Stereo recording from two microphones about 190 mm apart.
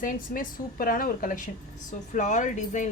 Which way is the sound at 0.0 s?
45° left (ahead or behind).